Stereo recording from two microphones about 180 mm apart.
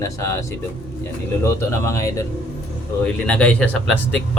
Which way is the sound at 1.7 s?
15° left (ahead or behind).